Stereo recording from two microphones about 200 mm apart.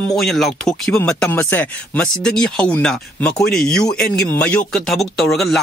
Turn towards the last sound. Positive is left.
turn(degrees=0)  # may be behind; listen again after turning